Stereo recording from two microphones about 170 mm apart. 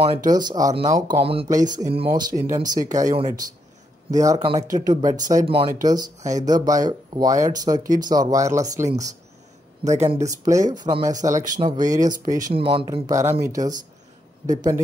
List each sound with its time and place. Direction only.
0.0 s speech: 30° right (ahead or behind)
1.2 s speech: 35° right (ahead or behind)
1.5 s speech: 20° right (ahead or behind)
10.1 s speech: 20° right (ahead or behind)
12.5 s speech: 30° right (ahead or behind)